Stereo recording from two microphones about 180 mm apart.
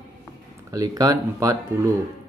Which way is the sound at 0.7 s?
20° right (ahead or behind).